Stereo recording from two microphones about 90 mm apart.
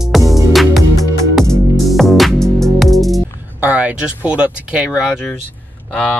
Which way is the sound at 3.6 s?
15° right (ahead or behind).